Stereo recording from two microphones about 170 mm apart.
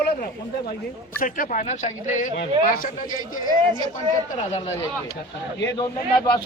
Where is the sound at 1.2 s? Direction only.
50° left (ahead or behind).